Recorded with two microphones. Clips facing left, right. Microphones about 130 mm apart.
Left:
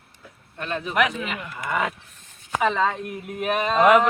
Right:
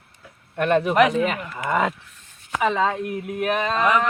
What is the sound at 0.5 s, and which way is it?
Speech, 60° right (ahead or behind).